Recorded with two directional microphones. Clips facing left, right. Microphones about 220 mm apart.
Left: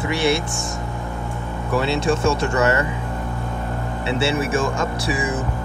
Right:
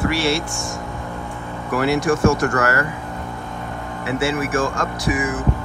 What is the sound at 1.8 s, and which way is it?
Speech, 25° left (ahead or behind).